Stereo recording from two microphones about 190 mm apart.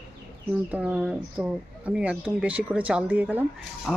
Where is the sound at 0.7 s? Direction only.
5° right (ahead or behind).